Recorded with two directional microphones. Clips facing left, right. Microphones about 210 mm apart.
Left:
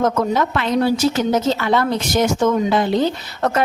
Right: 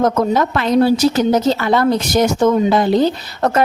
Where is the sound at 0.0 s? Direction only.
40° right (ahead or behind).